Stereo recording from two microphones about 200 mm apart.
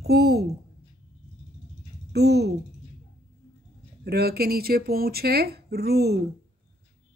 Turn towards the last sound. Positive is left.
turn(degrees=-55)  # may be behind; listen again after turning